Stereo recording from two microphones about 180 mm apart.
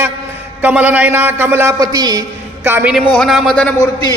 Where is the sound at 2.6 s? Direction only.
10° right (ahead or behind); by 3.9 s 5° left (ahead or behind).